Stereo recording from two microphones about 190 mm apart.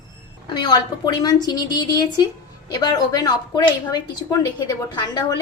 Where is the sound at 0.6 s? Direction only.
20° left (ahead or behind).